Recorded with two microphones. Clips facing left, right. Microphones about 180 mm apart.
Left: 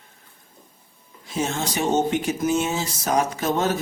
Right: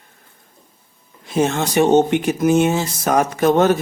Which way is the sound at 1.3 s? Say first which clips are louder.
Right 7 dB; 60° right (ahead or behind).